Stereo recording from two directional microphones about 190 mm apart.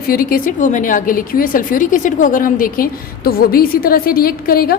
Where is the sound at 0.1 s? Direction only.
50° left (ahead or behind).